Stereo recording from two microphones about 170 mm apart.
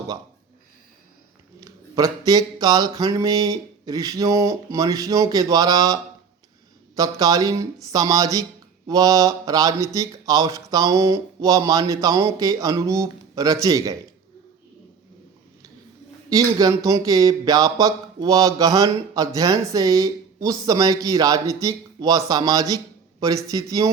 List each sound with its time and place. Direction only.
1.6 s speech: 20° right (ahead or behind)
16.3 s speech: 20° right (ahead or behind)